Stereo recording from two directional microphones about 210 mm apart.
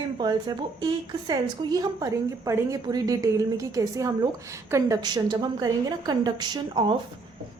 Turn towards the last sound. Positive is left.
turn(degrees=-20)  # may be behind; listen again after turning